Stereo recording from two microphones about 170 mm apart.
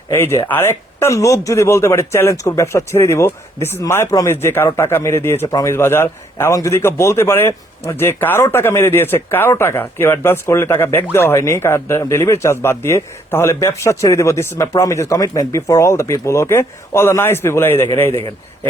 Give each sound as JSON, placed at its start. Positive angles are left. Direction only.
{"t": 0.1, "sound": "speech", "side_deg": 15}